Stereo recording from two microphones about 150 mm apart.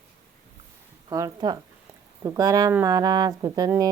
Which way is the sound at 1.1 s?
25° right (ahead or behind).